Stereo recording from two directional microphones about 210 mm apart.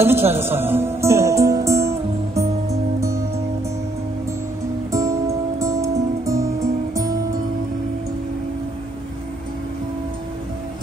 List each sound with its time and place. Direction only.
0.0 s music: 10° right (ahead or behind)
4.9 s music: 15° right (ahead or behind)